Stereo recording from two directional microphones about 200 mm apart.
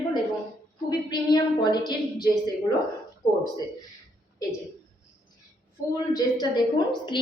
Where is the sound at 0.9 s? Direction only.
20° left (ahead or behind).